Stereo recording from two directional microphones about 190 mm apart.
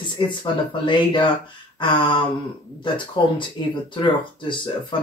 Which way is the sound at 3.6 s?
20° left (ahead or behind).